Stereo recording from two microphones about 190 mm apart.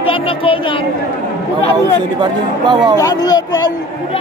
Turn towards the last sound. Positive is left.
turn(degrees=20)  # may be behind; listen again after turning